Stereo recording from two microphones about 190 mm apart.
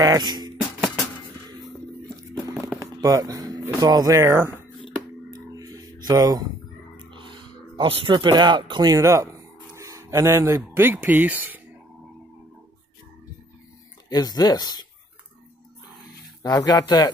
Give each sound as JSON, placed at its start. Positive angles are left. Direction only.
{"t": 0.0, "sound": "music", "side_deg": -20}
{"t": 2.8, "sound": "speech", "side_deg": -20}
{"t": 5.3, "sound": "a sound", "side_deg": -20}
{"t": 7.0, "sound": "speech", "side_deg": -25}
{"t": 14.0, "sound": "speech", "side_deg": 20}
{"t": 16.4, "sound": "speech", "side_deg": 20}